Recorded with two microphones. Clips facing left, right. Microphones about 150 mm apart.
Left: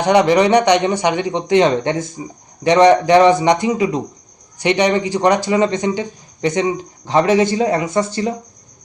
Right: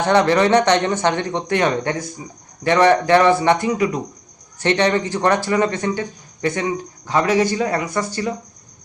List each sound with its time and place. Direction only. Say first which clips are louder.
0.0 s a man's voice: left 3 dB; 15° left (ahead or behind)